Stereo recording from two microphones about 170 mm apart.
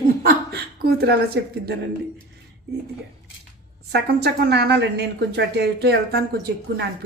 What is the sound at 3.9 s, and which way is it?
A woman's voice, 75° right (ahead or behind).